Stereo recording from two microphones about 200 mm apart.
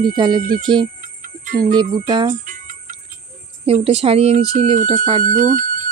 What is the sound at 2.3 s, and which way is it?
Jingle bell, 40° right (ahead or behind).